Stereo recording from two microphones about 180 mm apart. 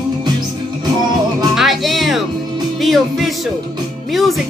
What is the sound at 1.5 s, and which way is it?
Music, centre (ahead or behind).